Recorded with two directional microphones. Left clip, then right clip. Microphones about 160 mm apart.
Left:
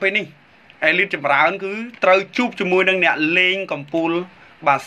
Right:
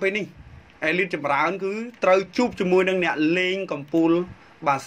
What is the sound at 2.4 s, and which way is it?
A man's voice, 55° right (ahead or behind).